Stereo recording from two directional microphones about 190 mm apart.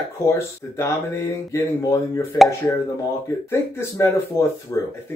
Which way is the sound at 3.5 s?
15° left (ahead or behind).